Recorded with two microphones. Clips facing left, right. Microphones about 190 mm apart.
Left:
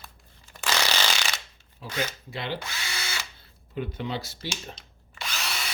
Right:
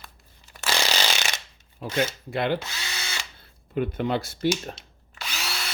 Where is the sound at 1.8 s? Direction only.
55° right (ahead or behind).